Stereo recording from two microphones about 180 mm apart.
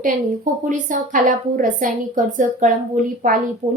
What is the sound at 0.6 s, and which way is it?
A woman's voice, 45° right (ahead or behind).